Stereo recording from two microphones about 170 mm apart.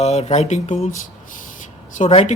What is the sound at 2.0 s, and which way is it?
Speech, 40° left (ahead or behind).